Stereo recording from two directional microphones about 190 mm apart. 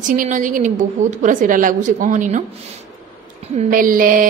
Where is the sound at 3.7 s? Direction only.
45° right (ahead or behind).